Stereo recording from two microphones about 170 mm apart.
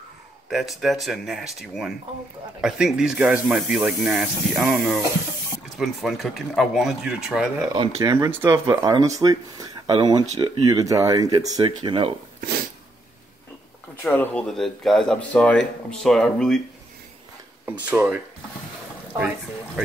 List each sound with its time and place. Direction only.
0.5 s speech: centre (ahead or behind)
7.7 s speech: 25° right (ahead or behind)
12.4 s a sound: 60° right (ahead or behind)
14.0 s speech: 10° left (ahead or behind)
17.8 s speech: 5° right (ahead or behind)